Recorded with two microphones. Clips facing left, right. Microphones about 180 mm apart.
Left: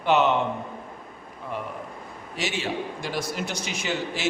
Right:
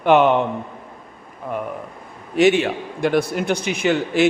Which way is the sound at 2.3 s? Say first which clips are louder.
Right 13 dB; 60° right (ahead or behind).